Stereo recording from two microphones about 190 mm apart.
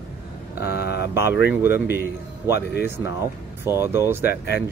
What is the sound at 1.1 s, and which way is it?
Speech, 15° right (ahead or behind).